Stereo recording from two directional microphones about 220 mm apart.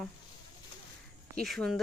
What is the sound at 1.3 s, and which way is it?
Speech, 5° left (ahead or behind).